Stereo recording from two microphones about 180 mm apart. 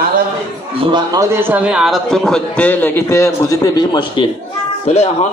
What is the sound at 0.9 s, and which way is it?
A man's voice, 20° right (ahead or behind).